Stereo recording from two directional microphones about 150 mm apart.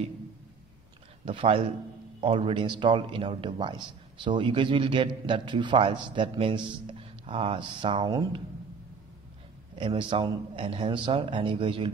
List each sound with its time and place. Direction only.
1.2 s a man's voice: 35° right (ahead or behind)
9.8 s a man's voice: 35° right (ahead or behind)